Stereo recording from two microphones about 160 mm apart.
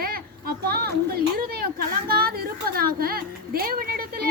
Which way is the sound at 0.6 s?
75° right (ahead or behind).